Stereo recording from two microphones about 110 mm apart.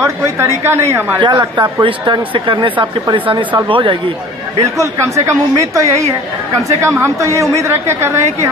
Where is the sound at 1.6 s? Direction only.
50° right (ahead or behind).